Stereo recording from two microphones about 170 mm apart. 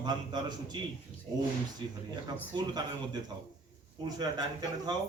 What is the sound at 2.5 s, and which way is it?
Speech, 25° right (ahead or behind).